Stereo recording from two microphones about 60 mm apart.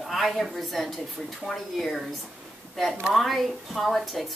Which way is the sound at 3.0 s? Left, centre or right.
Centre.